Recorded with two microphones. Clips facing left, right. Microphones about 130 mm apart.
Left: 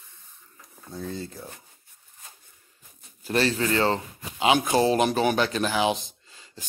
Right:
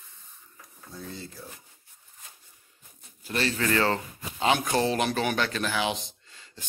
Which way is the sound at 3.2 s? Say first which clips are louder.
Left 5 dB; 35° left (ahead or behind).